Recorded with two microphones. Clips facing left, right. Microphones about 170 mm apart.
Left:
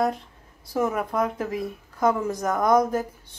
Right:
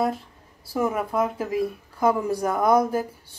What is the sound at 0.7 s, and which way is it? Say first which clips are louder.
Speech: right 1 dB; 5° right (ahead or behind).